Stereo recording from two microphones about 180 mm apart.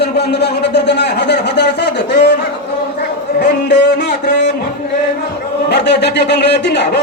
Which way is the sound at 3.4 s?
70° left (ahead or behind).